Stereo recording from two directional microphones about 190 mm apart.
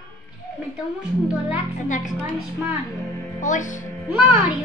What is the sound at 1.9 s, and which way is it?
Speech, 40° left (ahead or behind).